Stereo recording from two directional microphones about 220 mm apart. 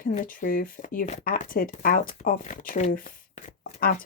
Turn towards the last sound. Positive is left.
turn(degrees=40)  # may be behind; listen again after turning